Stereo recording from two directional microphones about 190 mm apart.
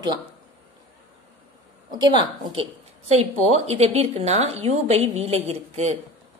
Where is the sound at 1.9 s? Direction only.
25° right (ahead or behind).